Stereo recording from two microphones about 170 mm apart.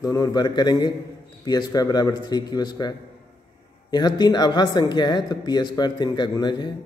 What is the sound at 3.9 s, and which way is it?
Speech, 25° left (ahead or behind).